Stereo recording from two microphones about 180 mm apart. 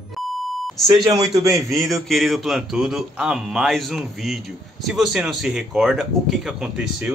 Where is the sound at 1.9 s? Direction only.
Centre (ahead or behind).